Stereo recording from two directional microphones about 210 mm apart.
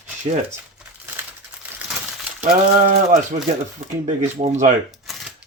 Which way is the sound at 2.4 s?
35° right (ahead or behind).